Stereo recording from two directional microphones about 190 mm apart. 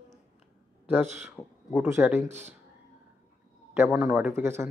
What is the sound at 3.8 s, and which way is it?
Speech, 5° right (ahead or behind).